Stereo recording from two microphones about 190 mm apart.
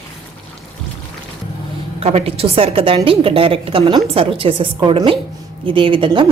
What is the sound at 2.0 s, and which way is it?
A woman's voice, 30° right (ahead or behind).